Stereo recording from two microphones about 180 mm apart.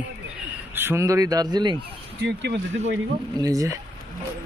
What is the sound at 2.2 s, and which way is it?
Speech, 70° right (ahead or behind).